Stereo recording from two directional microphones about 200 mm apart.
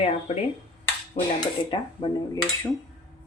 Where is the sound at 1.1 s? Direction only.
30° left (ahead or behind).